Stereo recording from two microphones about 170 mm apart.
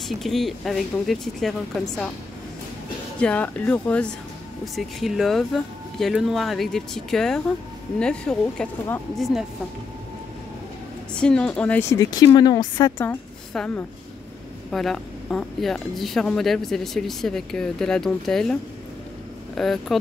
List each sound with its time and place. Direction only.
0.2 s speech: centre (ahead or behind)
3.2 s speech: 5° left (ahead or behind)
11.1 s speech: 5° left (ahead or behind)
12.0 s speech: 25° left (ahead or behind)
13.0 s a woman's voice: 10° left (ahead or behind)